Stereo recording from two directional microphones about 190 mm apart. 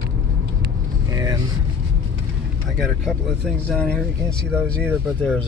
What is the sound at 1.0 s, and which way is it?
Vehicle, 15° right (ahead or behind).